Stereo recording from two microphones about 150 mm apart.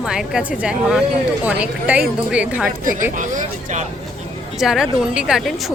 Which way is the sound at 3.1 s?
55° right (ahead or behind).